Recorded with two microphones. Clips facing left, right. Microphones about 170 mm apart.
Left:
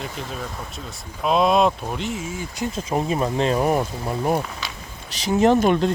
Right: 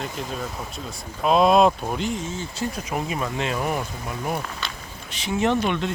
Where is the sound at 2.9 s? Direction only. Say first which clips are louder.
Left 5 dB; 35° left (ahead or behind).